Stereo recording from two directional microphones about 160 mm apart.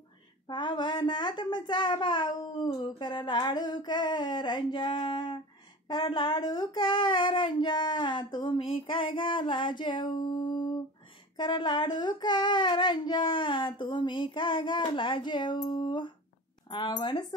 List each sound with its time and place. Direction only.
0.5 s child singing: 30° left (ahead or behind)